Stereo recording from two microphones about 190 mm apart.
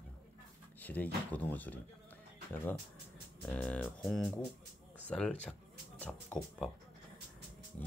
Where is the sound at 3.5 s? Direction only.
5° left (ahead or behind).